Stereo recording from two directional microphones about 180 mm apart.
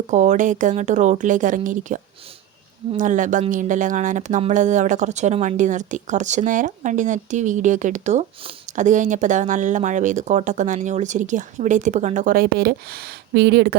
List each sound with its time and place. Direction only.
0.1 s speech: 40° right (ahead or behind)
3.0 s speech: 45° right (ahead or behind); by 13.7 s 60° right (ahead or behind)